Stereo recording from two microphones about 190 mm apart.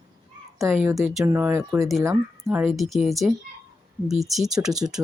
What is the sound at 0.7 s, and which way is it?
Speech, 10° right (ahead or behind).